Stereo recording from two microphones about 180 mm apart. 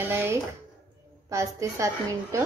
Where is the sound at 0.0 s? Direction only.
15° right (ahead or behind).